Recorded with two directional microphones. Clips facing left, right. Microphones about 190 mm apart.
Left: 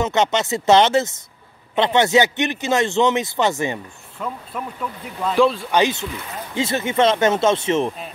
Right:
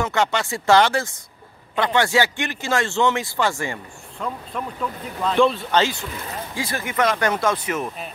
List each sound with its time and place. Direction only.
0.0 s a man's voice: 20° left (ahead or behind)
4.2 s speech: 5° left (ahead or behind)
5.7 s a man's voice: 20° left (ahead or behind)